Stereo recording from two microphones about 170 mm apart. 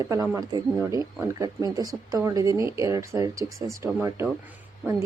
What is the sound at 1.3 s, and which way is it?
Speech, 20° right (ahead or behind).